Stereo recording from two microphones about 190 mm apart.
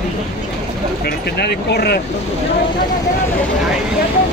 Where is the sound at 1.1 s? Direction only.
60° left (ahead or behind).